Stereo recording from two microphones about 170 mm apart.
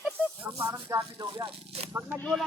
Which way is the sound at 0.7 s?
20° right (ahead or behind).